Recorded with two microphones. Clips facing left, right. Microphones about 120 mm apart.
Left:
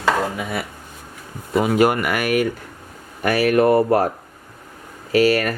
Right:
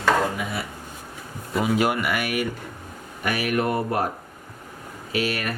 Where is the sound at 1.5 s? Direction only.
55° left (ahead or behind).